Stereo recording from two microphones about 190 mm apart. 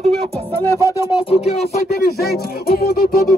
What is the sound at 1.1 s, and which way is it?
Speech, 30° left (ahead or behind).